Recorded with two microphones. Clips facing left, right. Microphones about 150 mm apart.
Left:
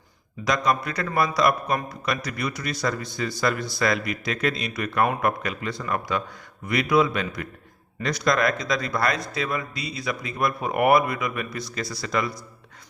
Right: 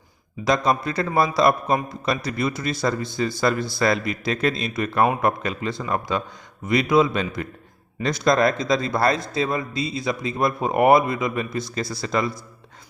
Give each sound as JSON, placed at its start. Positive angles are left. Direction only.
{"t": 0.4, "sound": "a man's voice", "side_deg": -30}